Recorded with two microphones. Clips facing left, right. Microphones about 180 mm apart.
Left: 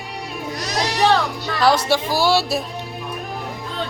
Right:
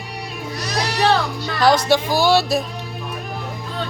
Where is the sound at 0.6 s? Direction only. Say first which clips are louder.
Even; 20° left (ahead or behind).